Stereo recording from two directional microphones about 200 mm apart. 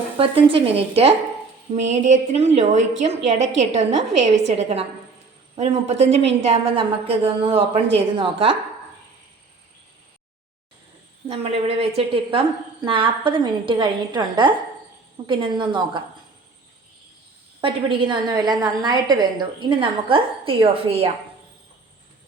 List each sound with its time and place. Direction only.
0.2 s a woman's voice: 25° right (ahead or behind)
11.3 s a woman's voice: 30° right (ahead or behind)
17.6 s a woman's voice: 25° right (ahead or behind)